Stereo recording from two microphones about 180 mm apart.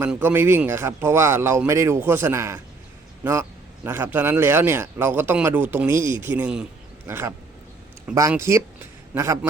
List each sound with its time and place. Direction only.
0.0 s speech: 10° right (ahead or behind)